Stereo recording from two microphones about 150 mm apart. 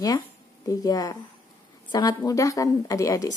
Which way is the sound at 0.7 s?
25° left (ahead or behind).